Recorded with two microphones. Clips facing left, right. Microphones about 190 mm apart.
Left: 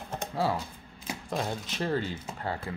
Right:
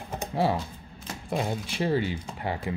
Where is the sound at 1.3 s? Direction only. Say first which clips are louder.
Right 4 dB; 10° right (ahead or behind).